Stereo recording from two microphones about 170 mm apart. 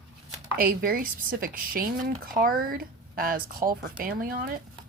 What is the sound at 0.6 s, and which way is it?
Speech, 60° right (ahead or behind).